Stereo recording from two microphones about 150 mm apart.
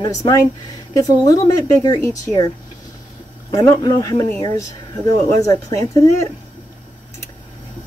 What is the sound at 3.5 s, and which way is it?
Speech, 20° left (ahead or behind).